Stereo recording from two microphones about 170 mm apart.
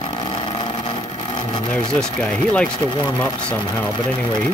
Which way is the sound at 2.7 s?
25° left (ahead or behind).